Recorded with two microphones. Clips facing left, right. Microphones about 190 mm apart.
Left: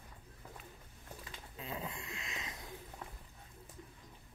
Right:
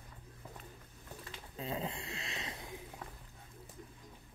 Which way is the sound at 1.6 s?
25° right (ahead or behind).